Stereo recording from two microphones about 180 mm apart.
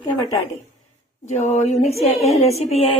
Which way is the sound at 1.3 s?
40° left (ahead or behind).